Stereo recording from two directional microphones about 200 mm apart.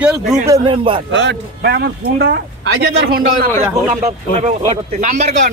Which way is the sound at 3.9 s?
35° right (ahead or behind).